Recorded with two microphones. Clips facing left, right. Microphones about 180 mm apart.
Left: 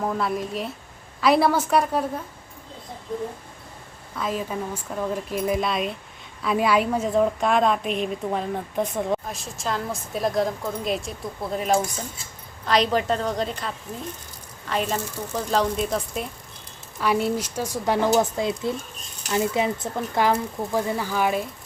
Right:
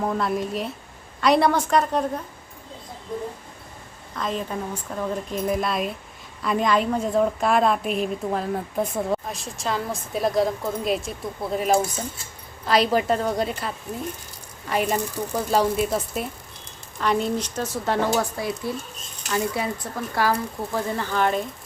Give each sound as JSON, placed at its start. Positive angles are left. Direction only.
{"t": 0.0, "sound": "a woman's voice", "side_deg": 0}
{"t": 4.1, "sound": "a woman's voice", "side_deg": 5}
{"t": 20.9, "sound": "speech", "side_deg": 10}